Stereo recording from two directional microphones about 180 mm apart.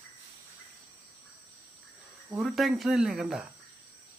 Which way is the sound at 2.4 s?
Centre (ahead or behind).